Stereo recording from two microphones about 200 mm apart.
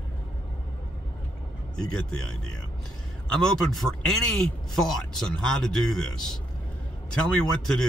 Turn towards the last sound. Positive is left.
turn(degrees=5)  # may be behind; listen again after turning